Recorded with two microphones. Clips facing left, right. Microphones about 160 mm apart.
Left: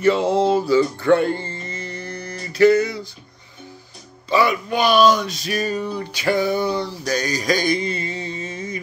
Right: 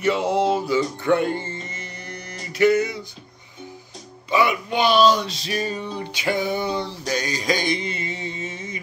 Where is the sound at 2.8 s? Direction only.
35° left (ahead or behind).